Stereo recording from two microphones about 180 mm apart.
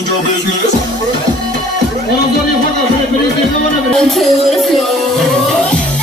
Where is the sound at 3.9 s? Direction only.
Centre (ahead or behind).